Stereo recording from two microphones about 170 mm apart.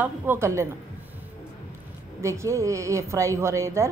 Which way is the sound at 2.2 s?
15° right (ahead or behind).